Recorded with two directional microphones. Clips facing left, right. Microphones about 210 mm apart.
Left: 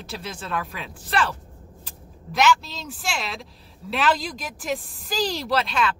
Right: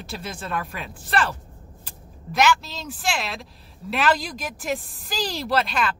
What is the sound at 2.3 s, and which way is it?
Speech, 5° right (ahead or behind).